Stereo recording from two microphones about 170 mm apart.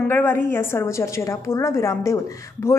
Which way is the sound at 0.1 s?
15° left (ahead or behind).